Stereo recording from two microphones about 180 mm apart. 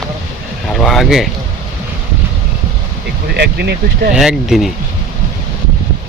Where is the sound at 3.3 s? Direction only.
65° right (ahead or behind).